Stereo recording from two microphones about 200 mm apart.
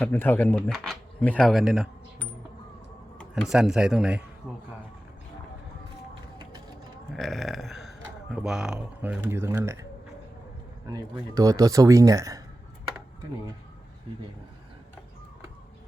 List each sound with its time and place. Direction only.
0.0 s speech: 10° left (ahead or behind)
7.1 s speech: centre (ahead or behind)
10.8 s speech: 20° right (ahead or behind)